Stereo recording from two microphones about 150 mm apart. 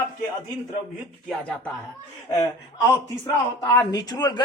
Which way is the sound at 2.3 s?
20° left (ahead or behind).